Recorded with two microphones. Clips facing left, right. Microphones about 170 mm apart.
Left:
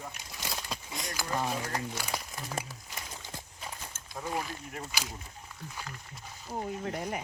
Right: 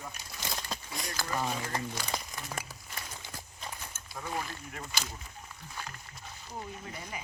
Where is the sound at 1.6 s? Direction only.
10° left (ahead or behind).